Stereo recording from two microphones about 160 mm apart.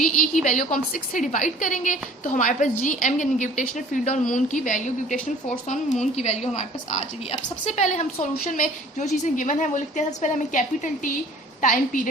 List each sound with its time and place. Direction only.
0.4 s a woman's voice: 55° left (ahead or behind)
8.4 s a woman's voice: 55° left (ahead or behind)